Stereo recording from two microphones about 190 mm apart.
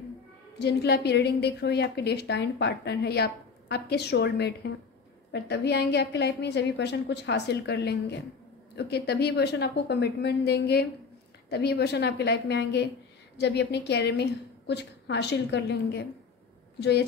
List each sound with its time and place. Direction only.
0.6 s a woman's voice: 60° left (ahead or behind)